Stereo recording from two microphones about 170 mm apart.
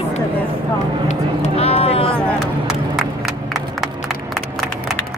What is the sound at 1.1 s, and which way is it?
Speech, 40° left (ahead or behind).